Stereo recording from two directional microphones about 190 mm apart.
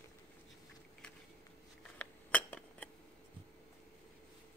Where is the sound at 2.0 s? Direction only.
10° left (ahead or behind).